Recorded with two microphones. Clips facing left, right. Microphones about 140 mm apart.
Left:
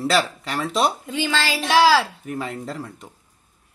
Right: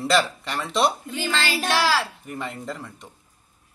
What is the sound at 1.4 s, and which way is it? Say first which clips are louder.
Speech: left 7 dB; 90° left.